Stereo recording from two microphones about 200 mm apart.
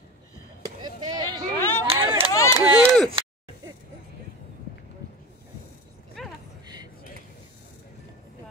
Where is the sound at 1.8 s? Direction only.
25° right (ahead or behind).